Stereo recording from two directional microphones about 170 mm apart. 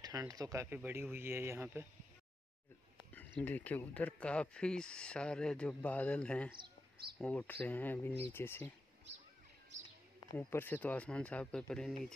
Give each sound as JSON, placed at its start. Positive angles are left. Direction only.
{"t": 0.0, "sound": "speech", "side_deg": -20}
{"t": 3.1, "sound": "speech", "side_deg": 10}
{"t": 10.3, "sound": "speech", "side_deg": 10}